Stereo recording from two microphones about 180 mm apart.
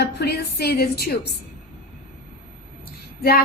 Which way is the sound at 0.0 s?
60° left (ahead or behind).